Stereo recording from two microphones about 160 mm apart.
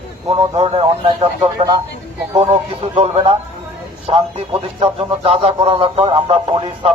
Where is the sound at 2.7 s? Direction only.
40° right (ahead or behind).